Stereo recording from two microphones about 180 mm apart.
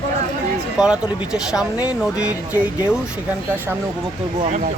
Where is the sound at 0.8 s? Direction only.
5° right (ahead or behind).